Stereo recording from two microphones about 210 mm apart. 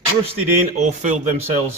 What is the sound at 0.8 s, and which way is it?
Speech, 35° right (ahead or behind).